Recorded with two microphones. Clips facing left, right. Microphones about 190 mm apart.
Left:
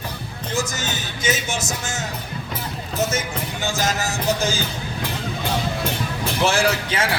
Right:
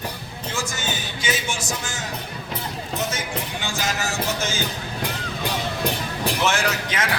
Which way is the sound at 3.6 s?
40° left (ahead or behind).